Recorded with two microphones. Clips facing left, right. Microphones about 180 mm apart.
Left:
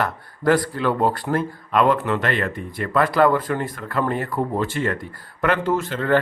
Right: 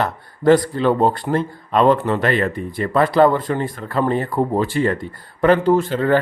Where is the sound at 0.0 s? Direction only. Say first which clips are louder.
Right 4 dB; 25° right (ahead or behind).